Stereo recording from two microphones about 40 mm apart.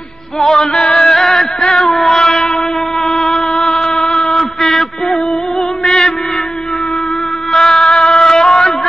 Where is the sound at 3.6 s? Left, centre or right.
Centre.